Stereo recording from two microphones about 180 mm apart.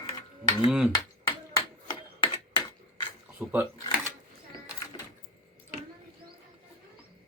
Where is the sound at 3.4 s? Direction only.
10° right (ahead or behind).